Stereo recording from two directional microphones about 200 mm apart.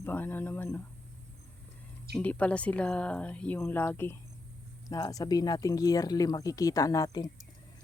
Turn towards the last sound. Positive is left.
turn(degrees=20)  # may be behind; listen again after turning